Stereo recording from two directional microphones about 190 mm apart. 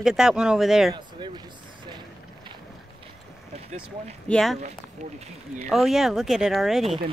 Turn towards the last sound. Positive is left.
turn(degrees=0)  # may be behind; listen again after turning